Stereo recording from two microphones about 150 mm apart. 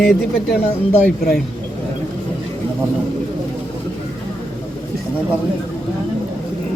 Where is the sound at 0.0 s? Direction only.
Centre (ahead or behind).